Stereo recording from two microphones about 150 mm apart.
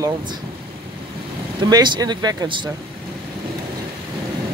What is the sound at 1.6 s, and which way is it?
Speech, 30° right (ahead or behind).